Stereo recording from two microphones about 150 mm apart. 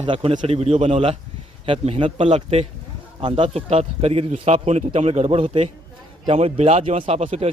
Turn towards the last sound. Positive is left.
turn(degrees=-45)  # may be behind; listen again after turning